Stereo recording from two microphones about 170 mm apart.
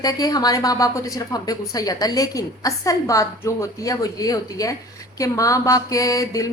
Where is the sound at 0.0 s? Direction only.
20° left (ahead or behind).